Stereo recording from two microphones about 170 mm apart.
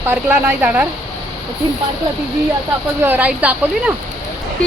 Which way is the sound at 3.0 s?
10° right (ahead or behind).